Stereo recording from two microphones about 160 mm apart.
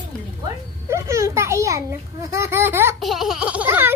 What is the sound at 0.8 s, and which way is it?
A child's voice, 15° right (ahead or behind).